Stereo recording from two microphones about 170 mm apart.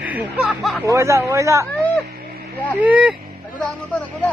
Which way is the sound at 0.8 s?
15° right (ahead or behind).